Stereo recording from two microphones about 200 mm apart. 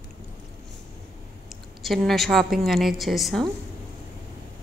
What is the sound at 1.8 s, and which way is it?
A woman's voice, centre (ahead or behind).